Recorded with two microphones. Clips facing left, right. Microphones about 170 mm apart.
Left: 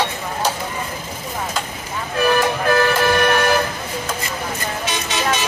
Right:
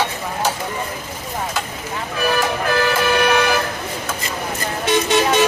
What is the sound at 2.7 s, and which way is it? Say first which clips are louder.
Vehicle: left 2 dB; 50° left (ahead or behind).